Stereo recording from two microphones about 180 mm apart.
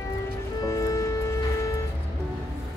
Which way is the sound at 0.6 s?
20° left (ahead or behind).